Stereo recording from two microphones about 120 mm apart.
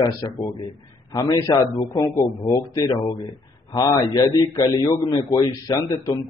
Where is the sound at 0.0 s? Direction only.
35° left (ahead or behind).